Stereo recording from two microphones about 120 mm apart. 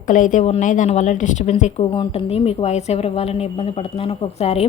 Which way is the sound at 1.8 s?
50° left (ahead or behind).